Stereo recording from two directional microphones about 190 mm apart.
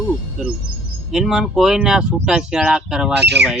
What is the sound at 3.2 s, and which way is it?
Speech, 60° right (ahead or behind).